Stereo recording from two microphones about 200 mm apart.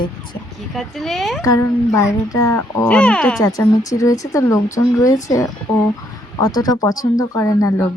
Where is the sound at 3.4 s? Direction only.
15° left (ahead or behind).